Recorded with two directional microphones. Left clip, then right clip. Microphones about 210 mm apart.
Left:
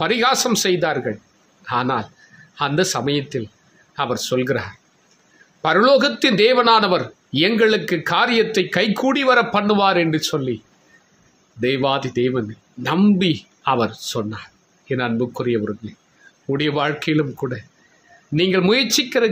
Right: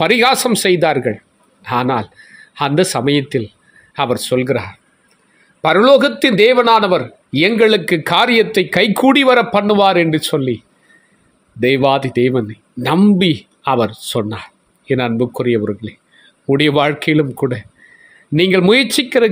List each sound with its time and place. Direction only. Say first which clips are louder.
0.0 s a man's voice: right 5 dB; 30° right (ahead or behind)
11.6 s speech: right 6 dB; 25° right (ahead or behind)